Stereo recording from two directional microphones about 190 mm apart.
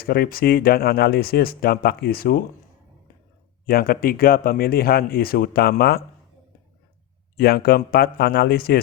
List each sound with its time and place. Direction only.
0.0 s speech: 55° left (ahead or behind)
3.7 s speech: 50° left (ahead or behind)
7.3 s speech: 55° left (ahead or behind)